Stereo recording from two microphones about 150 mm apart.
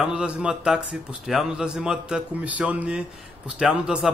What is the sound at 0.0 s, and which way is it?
A man's voice, 5° right (ahead or behind).